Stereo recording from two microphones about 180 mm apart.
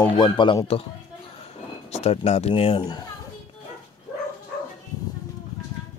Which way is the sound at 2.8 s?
20° left (ahead or behind).